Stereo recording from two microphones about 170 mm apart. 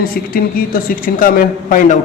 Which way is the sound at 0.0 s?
60° left (ahead or behind).